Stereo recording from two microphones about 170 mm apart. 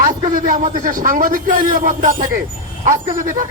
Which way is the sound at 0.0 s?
50° right (ahead or behind).